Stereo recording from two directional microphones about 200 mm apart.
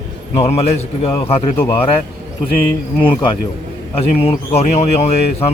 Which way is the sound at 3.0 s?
25° left (ahead or behind).